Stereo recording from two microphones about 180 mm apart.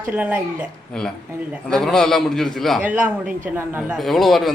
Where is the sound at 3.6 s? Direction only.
10° right (ahead or behind).